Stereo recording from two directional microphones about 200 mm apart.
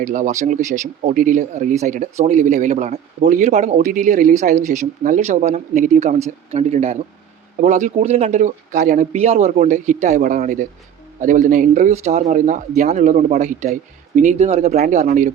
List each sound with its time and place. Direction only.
0.0 s speech: 40° right (ahead or behind)